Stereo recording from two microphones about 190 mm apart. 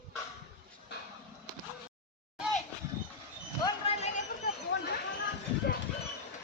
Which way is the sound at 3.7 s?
30° left (ahead or behind).